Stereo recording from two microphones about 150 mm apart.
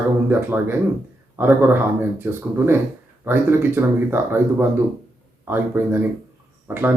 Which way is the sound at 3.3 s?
15° right (ahead or behind).